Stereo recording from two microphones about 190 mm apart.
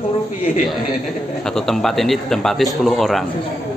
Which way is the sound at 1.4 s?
5° left (ahead or behind).